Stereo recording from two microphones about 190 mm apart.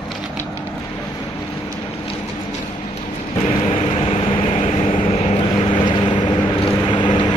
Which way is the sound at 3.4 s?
35° left (ahead or behind).